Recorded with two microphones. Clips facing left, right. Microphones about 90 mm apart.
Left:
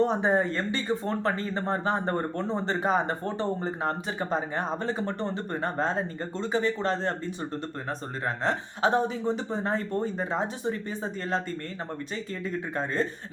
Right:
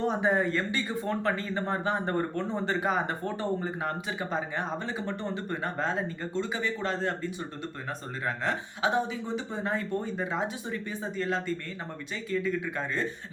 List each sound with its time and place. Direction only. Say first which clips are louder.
0.0 s speech: left 2 dB; 30° left (ahead or behind)
8.4 s speech: left 4 dB; 40° left (ahead or behind)